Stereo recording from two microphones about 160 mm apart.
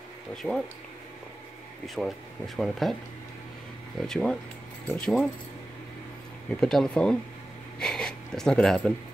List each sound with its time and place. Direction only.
0.4 s speech: centre (ahead or behind)
2.0 s speech: centre (ahead or behind)
4.1 s speech: 5° left (ahead or behind)
6.5 s speech: 5° left (ahead or behind)